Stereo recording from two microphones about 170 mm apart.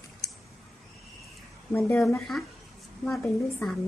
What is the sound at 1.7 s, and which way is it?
Speech, 10° left (ahead or behind).